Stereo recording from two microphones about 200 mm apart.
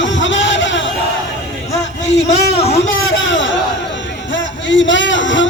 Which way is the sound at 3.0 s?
70° left (ahead or behind).